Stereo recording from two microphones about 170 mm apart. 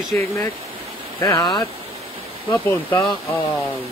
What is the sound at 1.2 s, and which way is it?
Speech, 20° left (ahead or behind).